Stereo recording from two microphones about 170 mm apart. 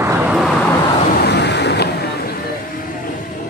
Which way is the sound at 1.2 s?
80° left.